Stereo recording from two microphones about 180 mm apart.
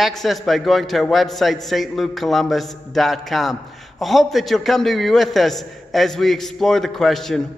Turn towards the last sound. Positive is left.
turn(degrees=0)  # may be behind; listen again after turning